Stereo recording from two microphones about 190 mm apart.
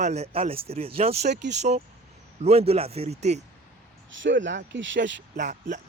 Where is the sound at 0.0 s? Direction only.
35° right (ahead or behind).